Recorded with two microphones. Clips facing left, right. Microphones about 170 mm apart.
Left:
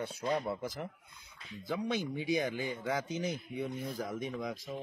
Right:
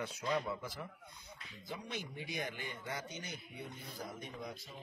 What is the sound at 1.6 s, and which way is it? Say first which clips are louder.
Speech: left 10 dB; 90° left.